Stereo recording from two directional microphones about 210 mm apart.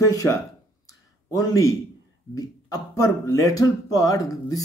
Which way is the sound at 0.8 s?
15° left (ahead or behind).